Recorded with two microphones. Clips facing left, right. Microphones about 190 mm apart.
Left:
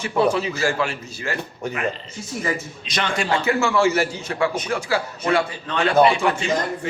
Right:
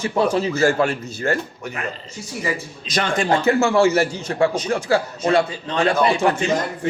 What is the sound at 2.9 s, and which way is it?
A man's voice, 45° right (ahead or behind).